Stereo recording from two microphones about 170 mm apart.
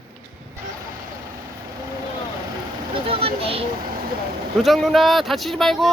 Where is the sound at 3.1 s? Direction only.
35° right (ahead or behind).